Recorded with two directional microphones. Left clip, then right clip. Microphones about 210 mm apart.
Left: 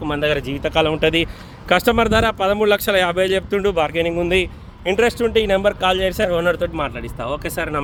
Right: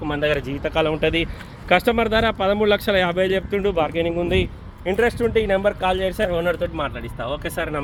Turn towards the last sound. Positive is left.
turn(degrees=5)  # may be behind; listen again after turning